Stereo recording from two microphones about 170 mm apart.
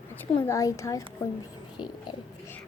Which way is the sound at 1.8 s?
25° left (ahead or behind).